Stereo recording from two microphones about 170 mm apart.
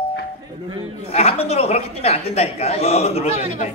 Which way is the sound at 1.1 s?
35° left (ahead or behind).